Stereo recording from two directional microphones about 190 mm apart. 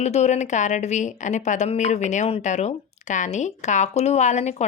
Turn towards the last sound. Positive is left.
turn(degrees=35)  # may be behind; listen again after turning